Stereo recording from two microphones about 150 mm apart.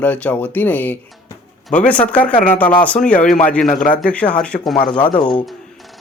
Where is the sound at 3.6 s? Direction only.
60° left (ahead or behind).